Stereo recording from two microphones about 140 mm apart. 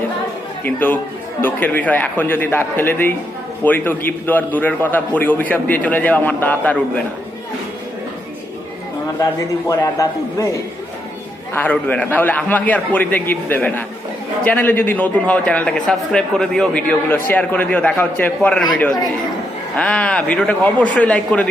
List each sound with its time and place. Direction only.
0.6 s a man's voice: 15° left (ahead or behind)
9.6 s a man's voice: 25° left (ahead or behind)
11.5 s a man's voice: 10° left (ahead or behind)